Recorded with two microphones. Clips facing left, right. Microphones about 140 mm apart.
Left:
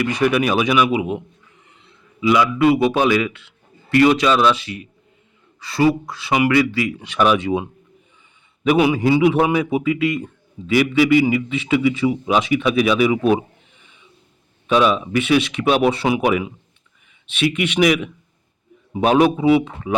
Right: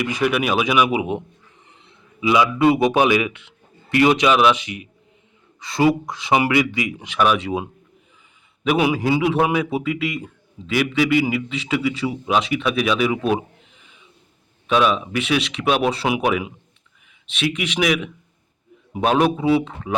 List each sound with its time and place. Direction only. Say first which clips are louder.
0.0 s a man's voice: left 3 dB; 5° right (ahead or behind)
0.9 s a man's voice: left 1 dB; 20° right (ahead or behind); by 7.6 s centre (ahead or behind)
8.6 s a man's voice: left 3 dB; 5° right (ahead or behind)
14.7 s a man's voice: left 2 dB; centre (ahead or behind)
17.2 s a man's voice: left 4 dB; 5° left (ahead or behind)